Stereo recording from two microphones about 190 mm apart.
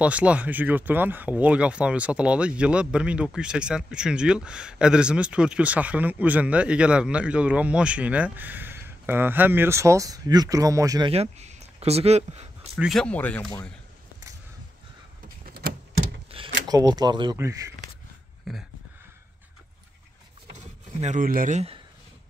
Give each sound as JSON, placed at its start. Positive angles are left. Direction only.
{"t": 0.0, "sound": "speech", "side_deg": -5}
{"t": 11.1, "sound": "speech", "side_deg": -35}
{"t": 12.7, "sound": "speech", "side_deg": 0}
{"t": 15.2, "sound": "power windows", "side_deg": -50}
{"t": 16.3, "sound": "a sound", "side_deg": -30}
{"t": 16.6, "sound": "speech", "side_deg": -20}
{"t": 21.0, "sound": "speech", "side_deg": -45}